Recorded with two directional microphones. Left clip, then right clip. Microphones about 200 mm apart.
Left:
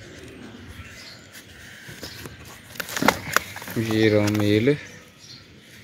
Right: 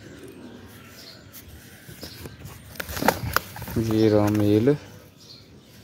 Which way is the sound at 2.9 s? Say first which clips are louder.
Left 2 dB; 5° right (ahead or behind).